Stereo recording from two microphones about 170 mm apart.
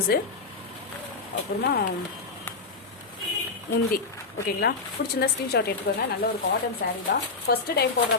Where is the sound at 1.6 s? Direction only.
65° left (ahead or behind).